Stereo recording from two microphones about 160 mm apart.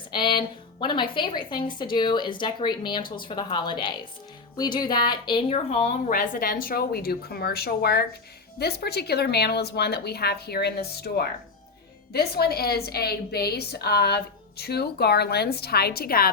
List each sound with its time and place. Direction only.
0.1 s a woman's voice: 30° left (ahead or behind)
6.1 s a woman's voice: 55° left (ahead or behind)